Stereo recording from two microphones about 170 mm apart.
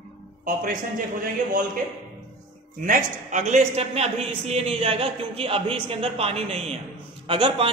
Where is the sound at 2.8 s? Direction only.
50° right (ahead or behind).